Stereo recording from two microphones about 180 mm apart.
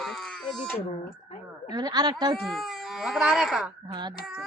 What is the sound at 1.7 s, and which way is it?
Speech, 20° right (ahead or behind).